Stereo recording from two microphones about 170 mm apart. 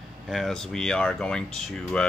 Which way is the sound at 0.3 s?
Centre (ahead or behind).